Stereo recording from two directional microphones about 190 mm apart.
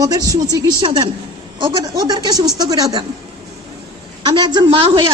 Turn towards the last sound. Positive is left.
turn(degrees=-25)  # may be behind; listen again after turning